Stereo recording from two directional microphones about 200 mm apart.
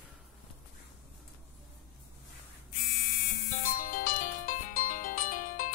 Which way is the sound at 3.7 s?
45° left (ahead or behind).